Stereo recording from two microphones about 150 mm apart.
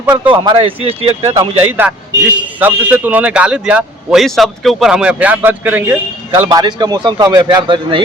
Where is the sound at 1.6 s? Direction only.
10° right (ahead or behind).